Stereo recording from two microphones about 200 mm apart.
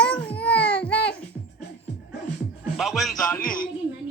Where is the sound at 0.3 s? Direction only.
5° left (ahead or behind).